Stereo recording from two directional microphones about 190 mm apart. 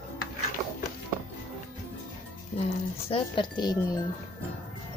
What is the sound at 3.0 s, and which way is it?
Speech, 25° left (ahead or behind).